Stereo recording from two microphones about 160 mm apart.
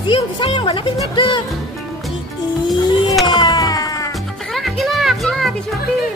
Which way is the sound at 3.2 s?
25° left (ahead or behind).